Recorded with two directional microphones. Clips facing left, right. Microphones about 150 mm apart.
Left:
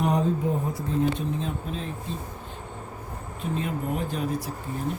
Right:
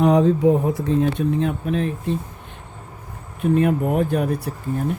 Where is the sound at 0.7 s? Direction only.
70° right (ahead or behind).